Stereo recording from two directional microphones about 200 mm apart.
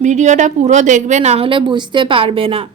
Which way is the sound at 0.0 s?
35° right (ahead or behind).